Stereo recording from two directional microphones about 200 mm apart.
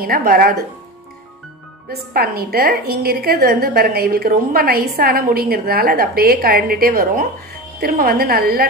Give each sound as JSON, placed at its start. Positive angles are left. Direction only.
{"t": 0.0, "sound": "a woman's voice", "side_deg": -45}
{"t": 1.9, "sound": "a woman's voice", "side_deg": -50}